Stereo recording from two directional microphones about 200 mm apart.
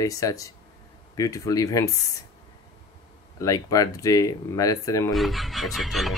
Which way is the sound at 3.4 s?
15° left (ahead or behind).